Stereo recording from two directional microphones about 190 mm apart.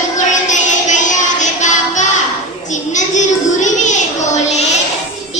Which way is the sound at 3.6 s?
40° left (ahead or behind).